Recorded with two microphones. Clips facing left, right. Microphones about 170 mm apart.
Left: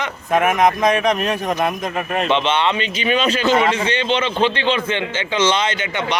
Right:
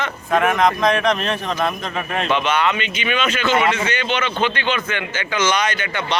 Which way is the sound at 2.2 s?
25° left (ahead or behind).